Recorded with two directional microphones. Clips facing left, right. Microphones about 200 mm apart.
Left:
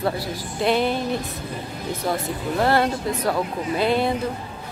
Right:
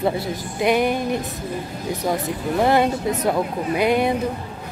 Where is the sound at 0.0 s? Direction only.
20° right (ahead or behind).